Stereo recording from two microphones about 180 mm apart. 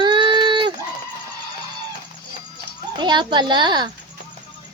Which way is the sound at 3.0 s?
25° right (ahead or behind).